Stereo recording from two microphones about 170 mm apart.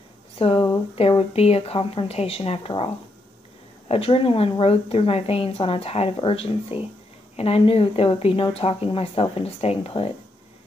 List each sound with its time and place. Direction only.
0.4 s a woman's voice: 35° left (ahead or behind)
3.9 s a woman's voice: 35° left (ahead or behind)